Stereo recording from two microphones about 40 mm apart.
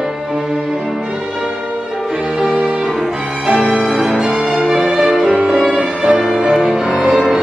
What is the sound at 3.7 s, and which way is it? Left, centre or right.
Music, centre.